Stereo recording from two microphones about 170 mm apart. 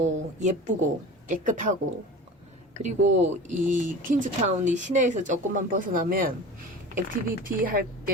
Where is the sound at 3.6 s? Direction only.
50° right (ahead or behind).